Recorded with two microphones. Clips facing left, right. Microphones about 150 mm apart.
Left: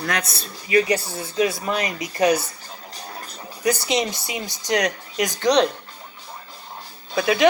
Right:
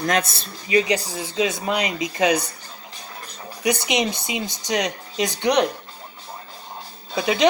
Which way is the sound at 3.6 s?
15° right (ahead or behind).